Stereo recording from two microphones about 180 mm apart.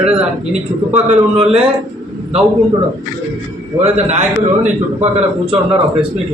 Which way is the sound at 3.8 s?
40° right (ahead or behind).